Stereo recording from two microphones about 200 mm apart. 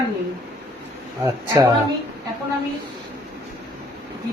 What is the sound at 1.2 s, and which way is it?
Speech, 20° right (ahead or behind).